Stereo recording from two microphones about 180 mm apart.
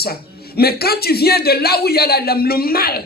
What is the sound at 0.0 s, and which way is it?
A man's voice, 60° left (ahead or behind).